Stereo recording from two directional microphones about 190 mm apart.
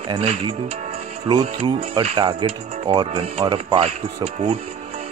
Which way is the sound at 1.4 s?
30° right (ahead or behind).